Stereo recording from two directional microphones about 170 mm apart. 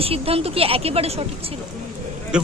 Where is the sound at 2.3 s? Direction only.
5° right (ahead or behind).